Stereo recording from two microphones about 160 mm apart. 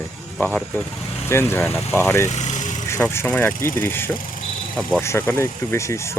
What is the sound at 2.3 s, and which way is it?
Vehicle, 45° left (ahead or behind).